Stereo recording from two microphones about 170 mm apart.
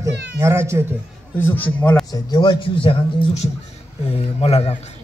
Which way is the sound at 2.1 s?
25° left (ahead or behind).